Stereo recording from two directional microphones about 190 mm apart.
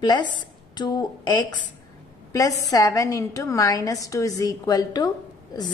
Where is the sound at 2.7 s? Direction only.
15° left (ahead or behind).